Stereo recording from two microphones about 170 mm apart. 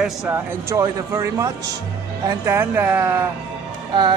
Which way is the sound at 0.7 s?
20° right (ahead or behind).